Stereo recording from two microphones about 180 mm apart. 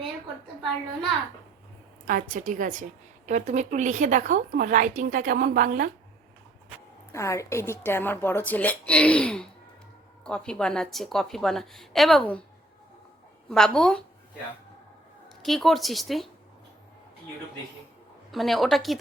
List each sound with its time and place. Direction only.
2.0 s a woman's voice: 50° right (ahead or behind)
7.1 s a woman's voice: 15° left (ahead or behind)
13.5 s a woman's voice: centre (ahead or behind)
15.4 s a woman's voice: centre (ahead or behind)
18.3 s a woman's voice: centre (ahead or behind)